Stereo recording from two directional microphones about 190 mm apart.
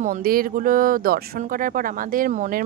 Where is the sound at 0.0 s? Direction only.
50° right (ahead or behind).